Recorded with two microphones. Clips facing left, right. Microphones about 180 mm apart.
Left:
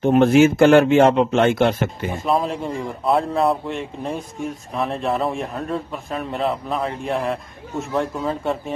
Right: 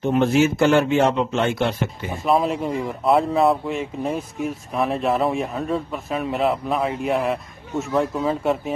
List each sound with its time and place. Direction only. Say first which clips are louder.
0.0 s speech: left 4 dB; 55° left (ahead or behind)
2.2 s speech: right 2 dB; centre (ahead or behind)